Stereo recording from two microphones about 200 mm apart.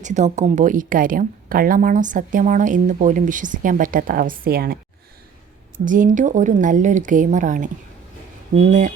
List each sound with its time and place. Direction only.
0.0 s speech: 35° right (ahead or behind)
5.8 s speech: 40° right (ahead or behind)